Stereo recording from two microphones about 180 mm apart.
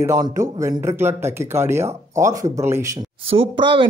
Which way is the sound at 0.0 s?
15° right (ahead or behind).